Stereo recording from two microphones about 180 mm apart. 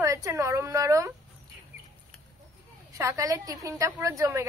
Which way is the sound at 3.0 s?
15° right (ahead or behind).